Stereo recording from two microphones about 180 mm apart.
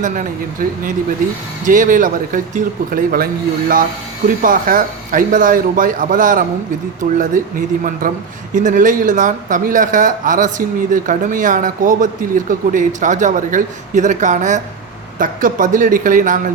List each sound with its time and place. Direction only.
0.0 s speech: 45° right (ahead or behind)
4.4 s speech: 50° right (ahead or behind)